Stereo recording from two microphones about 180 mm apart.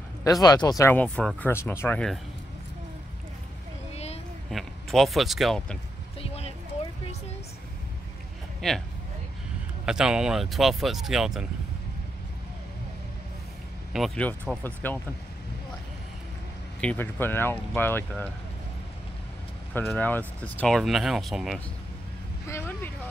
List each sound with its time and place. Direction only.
0.2 s speech: 20° left (ahead or behind)
3.9 s a sound: 35° left (ahead or behind)
4.5 s speech: centre (ahead or behind)
6.2 s a sound: 35° left (ahead or behind)
8.5 s speech: centre (ahead or behind)
9.8 s speech: 5° right (ahead or behind)
13.9 s speech: 5° left (ahead or behind)
16.8 s speech: 10° left (ahead or behind)
19.7 s speech: 10° left (ahead or behind)
22.5 s vehicle: 10° left (ahead or behind)